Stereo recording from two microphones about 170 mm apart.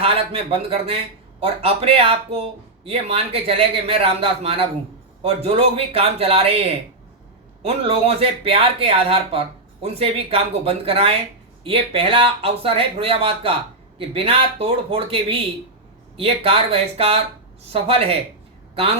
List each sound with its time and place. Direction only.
0.0 s speech: 35° right (ahead or behind)